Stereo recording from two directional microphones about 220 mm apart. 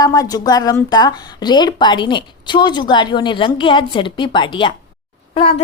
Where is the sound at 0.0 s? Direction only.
15° left (ahead or behind).